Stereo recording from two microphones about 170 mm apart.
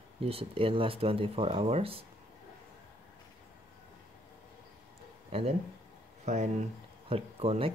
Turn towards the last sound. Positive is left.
turn(degrees=-35)  # may be behind; listen again after turning